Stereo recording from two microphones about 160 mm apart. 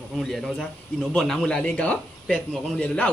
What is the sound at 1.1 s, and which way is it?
A man's voice, centre (ahead or behind).